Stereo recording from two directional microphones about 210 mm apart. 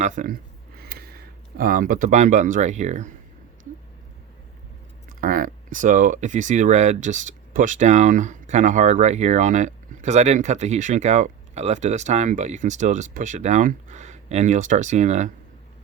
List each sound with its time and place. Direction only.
0.0 s speech: 35° right (ahead or behind)
5.0 s speech: 40° right (ahead or behind)